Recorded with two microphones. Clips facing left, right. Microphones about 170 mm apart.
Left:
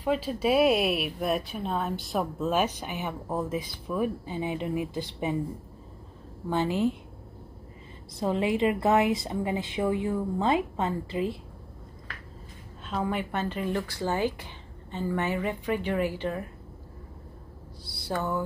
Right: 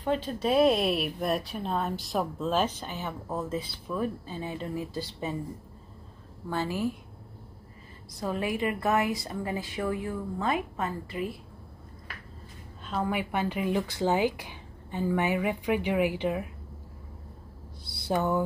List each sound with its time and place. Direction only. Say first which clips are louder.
0.0 s a woman's voice: left 2 dB; 5° left (ahead or behind)
6.5 s a woman's voice: left 4 dB; 20° left (ahead or behind)
8.2 s a woman's voice: left 4 dB; 25° left (ahead or behind)
12.8 s speech: even; centre (ahead or behind)
17.8 s speech: right 3 dB; 20° right (ahead or behind)